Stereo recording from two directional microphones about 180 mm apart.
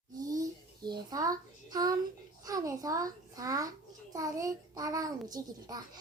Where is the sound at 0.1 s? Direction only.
20° right (ahead or behind).